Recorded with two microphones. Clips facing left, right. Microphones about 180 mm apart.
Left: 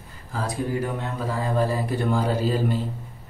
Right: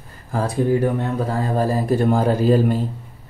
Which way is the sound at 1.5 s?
40° right (ahead or behind).